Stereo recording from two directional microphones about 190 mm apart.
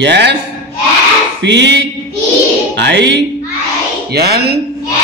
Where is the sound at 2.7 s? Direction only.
65° right (ahead or behind).